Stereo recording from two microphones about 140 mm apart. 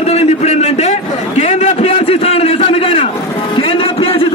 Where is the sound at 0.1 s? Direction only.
50° left (ahead or behind).